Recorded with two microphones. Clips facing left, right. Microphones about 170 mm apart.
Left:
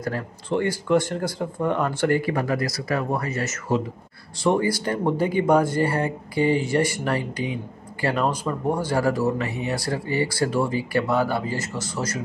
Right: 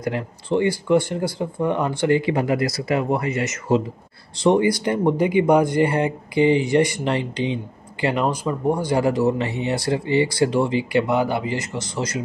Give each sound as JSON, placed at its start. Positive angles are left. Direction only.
{"t": 0.0, "sound": "speech", "side_deg": -15}